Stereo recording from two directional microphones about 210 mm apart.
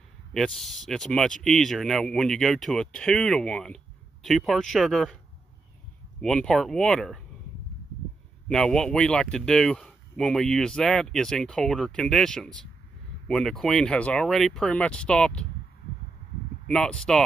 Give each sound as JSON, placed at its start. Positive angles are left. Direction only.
{"t": 0.3, "sound": "speech", "side_deg": 0}
{"t": 6.2, "sound": "speech", "side_deg": 5}
{"t": 8.5, "sound": "speech", "side_deg": 5}
{"t": 16.6, "sound": "speech", "side_deg": 5}